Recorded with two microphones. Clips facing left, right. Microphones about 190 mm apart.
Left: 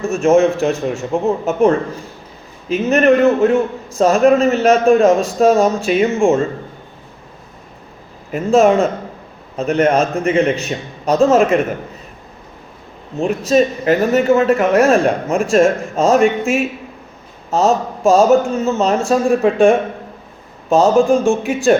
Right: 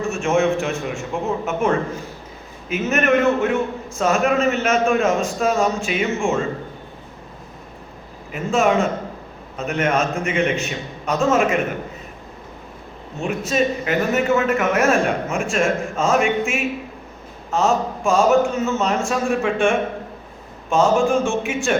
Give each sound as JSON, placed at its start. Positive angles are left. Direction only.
{"t": 0.1, "sound": "speech", "side_deg": 40}
{"t": 2.6, "sound": "speech", "side_deg": 35}
{"t": 8.3, "sound": "a man's voice", "side_deg": 35}
{"t": 13.1, "sound": "speech", "side_deg": 35}